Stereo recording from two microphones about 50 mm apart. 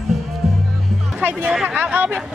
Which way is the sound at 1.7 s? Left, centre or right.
Right.